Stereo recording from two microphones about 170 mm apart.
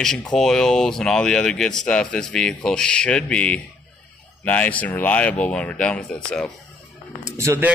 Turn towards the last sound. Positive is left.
turn(degrees=-15)  # may be behind; listen again after turning